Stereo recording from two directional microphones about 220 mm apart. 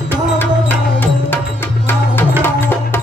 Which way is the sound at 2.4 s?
10° left (ahead or behind).